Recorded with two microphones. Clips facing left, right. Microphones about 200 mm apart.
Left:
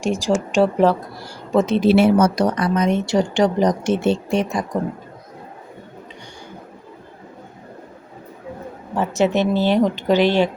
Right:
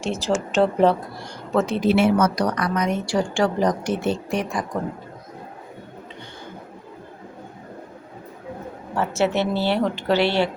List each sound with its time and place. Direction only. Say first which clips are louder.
0.0 s a woman's voice: left 4 dB; 15° left (ahead or behind)
1.5 s a woman's voice: left 4 dB; 20° left (ahead or behind)
9.0 s a woman's voice: left 3 dB; 15° left (ahead or behind)